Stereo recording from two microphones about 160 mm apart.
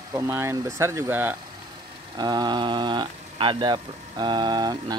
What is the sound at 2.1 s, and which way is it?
Speech, 25° right (ahead or behind).